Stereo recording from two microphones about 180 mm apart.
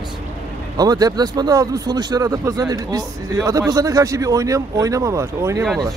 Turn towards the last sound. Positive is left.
turn(degrees=-15)  # may be behind; listen again after turning